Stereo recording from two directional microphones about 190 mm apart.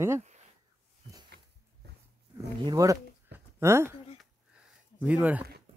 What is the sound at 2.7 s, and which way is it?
Speech, 15° right (ahead or behind).